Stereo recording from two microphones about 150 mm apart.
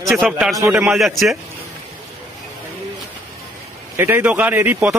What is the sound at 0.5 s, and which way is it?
Speech, 15° right (ahead or behind).